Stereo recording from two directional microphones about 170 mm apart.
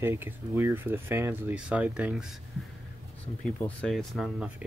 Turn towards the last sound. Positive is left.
turn(degrees=0)  # may be behind; listen again after turning